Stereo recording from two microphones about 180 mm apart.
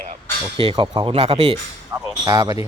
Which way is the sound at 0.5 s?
30° right (ahead or behind).